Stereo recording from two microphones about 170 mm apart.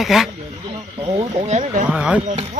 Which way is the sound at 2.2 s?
45° right (ahead or behind).